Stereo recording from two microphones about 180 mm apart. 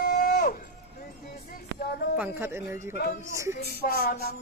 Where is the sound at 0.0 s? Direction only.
50° left (ahead or behind).